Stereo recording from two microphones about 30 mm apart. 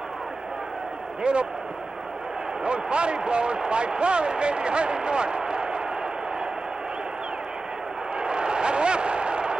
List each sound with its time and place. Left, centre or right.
1.2 s speech: right
2.6 s speech: right
8.2 s a sound: right